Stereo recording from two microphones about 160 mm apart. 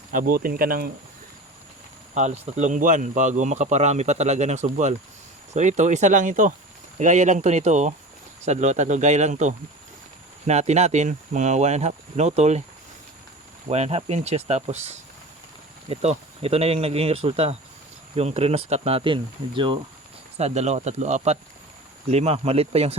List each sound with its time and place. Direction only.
0.1 s speech: 60° right (ahead or behind)
2.6 s a man's voice: 50° right (ahead or behind)
13.7 s speech: 40° right (ahead or behind)
20.3 s a man's voice: 45° right (ahead or behind)